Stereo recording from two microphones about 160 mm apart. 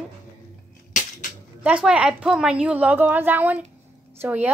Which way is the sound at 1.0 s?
55° left (ahead or behind).